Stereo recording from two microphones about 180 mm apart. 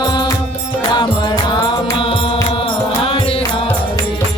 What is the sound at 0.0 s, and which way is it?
Music, 25° left (ahead or behind).